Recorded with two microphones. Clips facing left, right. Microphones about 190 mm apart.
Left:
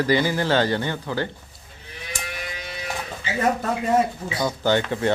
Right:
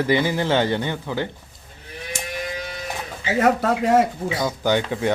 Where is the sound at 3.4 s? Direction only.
90° right.